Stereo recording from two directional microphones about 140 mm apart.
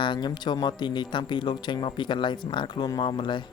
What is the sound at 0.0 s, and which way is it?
Speech, 35° left (ahead or behind).